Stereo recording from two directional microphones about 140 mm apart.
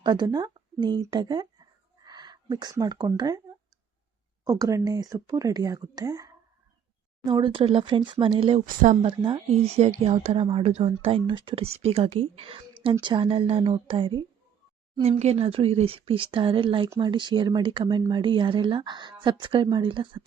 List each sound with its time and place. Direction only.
0.0 s speech: 30° right (ahead or behind)
4.4 s speech: 25° right (ahead or behind); by 8.6 s 40° right (ahead or behind)
8.6 s speech: 70° right (ahead or behind)
9.0 s speech: 35° right (ahead or behind)